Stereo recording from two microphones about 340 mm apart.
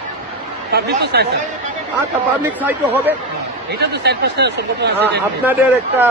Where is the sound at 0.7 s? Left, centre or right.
Right.